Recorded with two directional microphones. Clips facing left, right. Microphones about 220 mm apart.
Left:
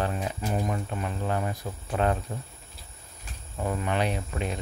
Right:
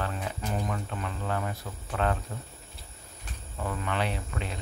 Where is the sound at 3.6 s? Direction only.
20° left (ahead or behind).